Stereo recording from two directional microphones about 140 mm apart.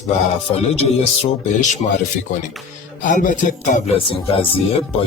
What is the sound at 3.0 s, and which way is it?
Speech, 70° left (ahead or behind).